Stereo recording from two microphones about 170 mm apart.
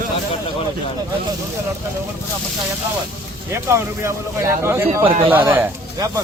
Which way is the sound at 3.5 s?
15° right (ahead or behind).